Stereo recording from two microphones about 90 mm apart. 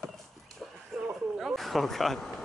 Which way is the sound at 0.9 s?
Centre (ahead or behind).